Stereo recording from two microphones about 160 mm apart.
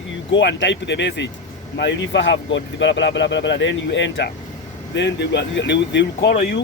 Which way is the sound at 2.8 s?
90° left.